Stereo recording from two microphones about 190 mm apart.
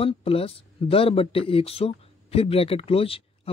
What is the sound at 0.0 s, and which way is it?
A man's voice, 30° left (ahead or behind).